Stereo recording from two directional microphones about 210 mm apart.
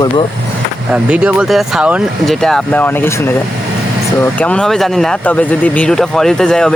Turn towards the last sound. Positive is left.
turn(degrees=5)  # may be behind; listen again after turning